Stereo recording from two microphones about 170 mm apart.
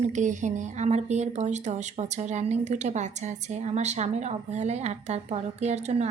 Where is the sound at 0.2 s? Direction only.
45° right (ahead or behind).